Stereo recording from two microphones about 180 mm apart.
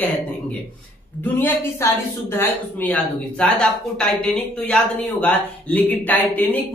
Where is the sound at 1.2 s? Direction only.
10° left (ahead or behind).